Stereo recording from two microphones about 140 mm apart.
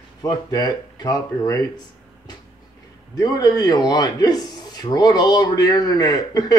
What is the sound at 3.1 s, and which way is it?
A man's voice, 30° left (ahead or behind).